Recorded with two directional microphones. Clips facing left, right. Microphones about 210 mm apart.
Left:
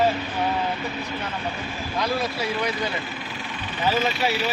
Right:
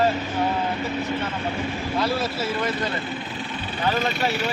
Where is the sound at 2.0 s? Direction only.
5° right (ahead or behind).